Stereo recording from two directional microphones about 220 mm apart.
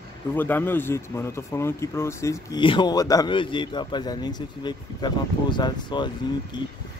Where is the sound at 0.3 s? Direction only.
10° left (ahead or behind).